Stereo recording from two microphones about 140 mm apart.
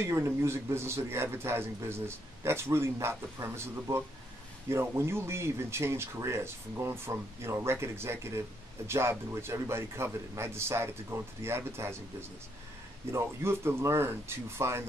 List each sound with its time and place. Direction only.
0.0 s a man's voice: 20° right (ahead or behind)